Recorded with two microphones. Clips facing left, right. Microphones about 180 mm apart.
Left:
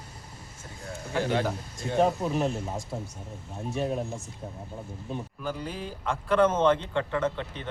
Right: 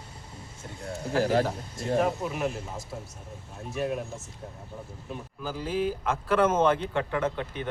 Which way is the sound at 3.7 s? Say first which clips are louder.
Even; 30° left (ahead or behind).